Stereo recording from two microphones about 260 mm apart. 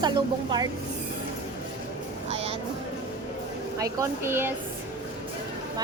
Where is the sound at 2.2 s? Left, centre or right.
Right.